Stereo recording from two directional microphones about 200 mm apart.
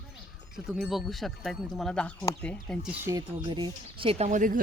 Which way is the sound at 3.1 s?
20° right (ahead or behind).